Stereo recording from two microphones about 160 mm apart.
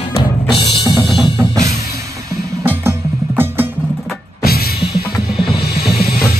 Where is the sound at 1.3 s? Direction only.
20° right (ahead or behind).